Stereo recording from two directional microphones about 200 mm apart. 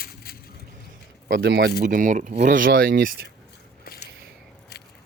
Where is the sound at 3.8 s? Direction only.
45° left (ahead or behind).